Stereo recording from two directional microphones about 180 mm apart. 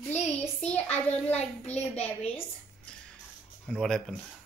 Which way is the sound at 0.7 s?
10° left (ahead or behind).